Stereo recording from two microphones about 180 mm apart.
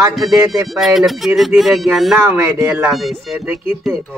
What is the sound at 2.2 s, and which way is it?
Speech, 15° right (ahead or behind).